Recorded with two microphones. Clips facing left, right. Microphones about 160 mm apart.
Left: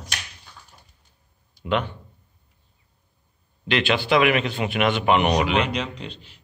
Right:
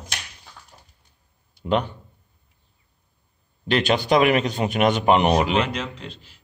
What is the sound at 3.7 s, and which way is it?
A man's voice, 40° right (ahead or behind).